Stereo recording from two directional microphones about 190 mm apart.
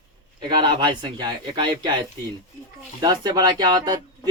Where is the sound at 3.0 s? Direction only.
20° right (ahead or behind).